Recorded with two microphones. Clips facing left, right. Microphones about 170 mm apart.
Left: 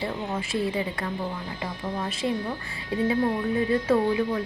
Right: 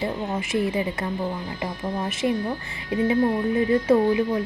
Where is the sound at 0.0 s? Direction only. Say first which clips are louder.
Right 3 dB; 20° right (ahead or behind).